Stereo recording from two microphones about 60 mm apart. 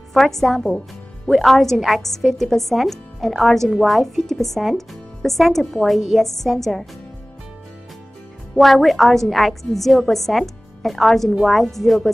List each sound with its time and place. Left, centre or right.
0.1 s speech: centre
8.5 s speech: centre